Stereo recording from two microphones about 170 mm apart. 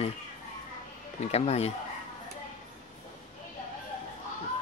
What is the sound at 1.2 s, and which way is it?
Speech, 40° left (ahead or behind).